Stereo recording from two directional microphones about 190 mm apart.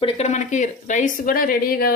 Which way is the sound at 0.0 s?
35° left (ahead or behind).